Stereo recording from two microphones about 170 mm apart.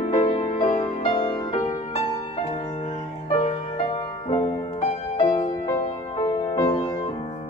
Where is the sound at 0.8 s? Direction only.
30° left (ahead or behind).